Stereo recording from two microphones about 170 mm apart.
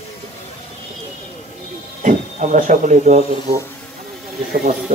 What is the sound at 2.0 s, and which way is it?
Speech, 50° right (ahead or behind).